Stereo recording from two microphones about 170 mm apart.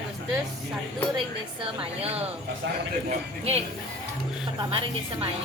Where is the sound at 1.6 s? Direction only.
35° right (ahead or behind).